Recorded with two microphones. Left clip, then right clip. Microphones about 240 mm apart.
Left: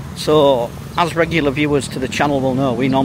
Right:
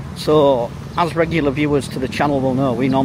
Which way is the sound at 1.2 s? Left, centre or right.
Centre.